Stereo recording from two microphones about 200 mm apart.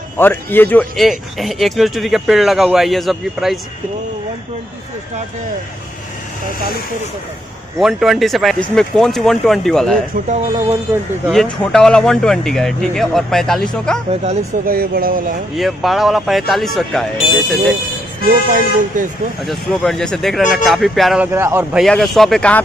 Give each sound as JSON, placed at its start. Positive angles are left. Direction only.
{"t": 0.2, "sound": "speech", "side_deg": 10}
{"t": 7.8, "sound": "speech", "side_deg": 0}
{"t": 11.2, "sound": "speech", "side_deg": 5}
{"t": 14.2, "sound": "speech", "side_deg": -35}
{"t": 14.7, "sound": "speech", "side_deg": -45}
{"t": 15.5, "sound": "speech", "side_deg": 0}
{"t": 18.5, "sound": "speech", "side_deg": -40}
{"t": 19.4, "sound": "speech", "side_deg": 0}
{"t": 21.8, "sound": "speech", "side_deg": 0}